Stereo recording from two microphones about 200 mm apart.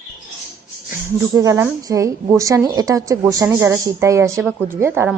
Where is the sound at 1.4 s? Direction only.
15° right (ahead or behind).